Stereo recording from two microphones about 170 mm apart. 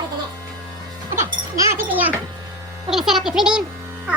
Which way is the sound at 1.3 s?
20° right (ahead or behind).